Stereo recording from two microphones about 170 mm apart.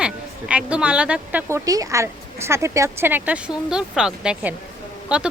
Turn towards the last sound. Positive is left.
turn(degrees=-5)  # may be behind; listen again after turning